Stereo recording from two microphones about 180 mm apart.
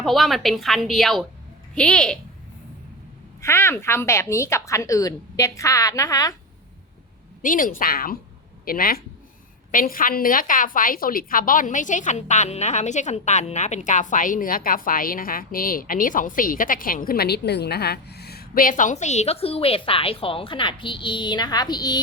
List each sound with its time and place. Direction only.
0.0 s a woman's voice: centre (ahead or behind)
3.4 s a woman's voice: 15° left (ahead or behind)
7.4 s a woman's voice: 50° left (ahead or behind); by 22.0 s 25° left (ahead or behind)